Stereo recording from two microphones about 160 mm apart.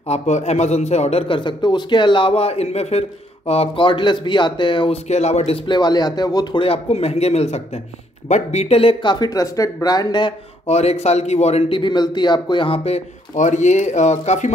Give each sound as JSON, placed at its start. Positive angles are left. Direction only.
{"t": 0.0, "sound": "a man's voice", "side_deg": 40}
{"t": 5.7, "sound": "a man's voice", "side_deg": 25}
{"t": 10.7, "sound": "a man's voice", "side_deg": 45}